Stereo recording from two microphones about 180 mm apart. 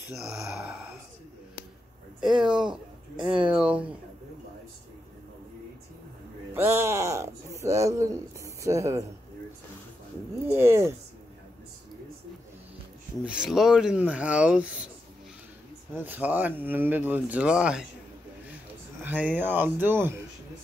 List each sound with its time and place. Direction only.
0.1 s speech: centre (ahead or behind)
2.1 s speech: 5° right (ahead or behind)
3.4 s speech: 5° right (ahead or behind)
6.5 s speech: 15° right (ahead or behind)
10.5 s speech: 15° right (ahead or behind)
13.2 s speech: 5° right (ahead or behind)
15.9 s speech: 10° right (ahead or behind)
19.0 s speech: 10° right (ahead or behind)